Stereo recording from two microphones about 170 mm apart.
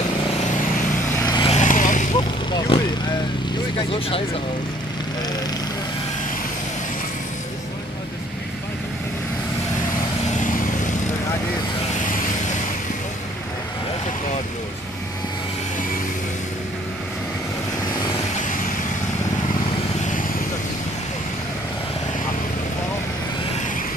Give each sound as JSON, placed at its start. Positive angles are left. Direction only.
{"t": 1.2, "sound": "vehicle", "side_deg": 25}
{"t": 1.5, "sound": "vehicle", "side_deg": 50}
{"t": 2.1, "sound": "vehicle", "side_deg": 25}
{"t": 3.7, "sound": "speech", "side_deg": 30}
{"t": 10.3, "sound": "vehicle", "side_deg": 50}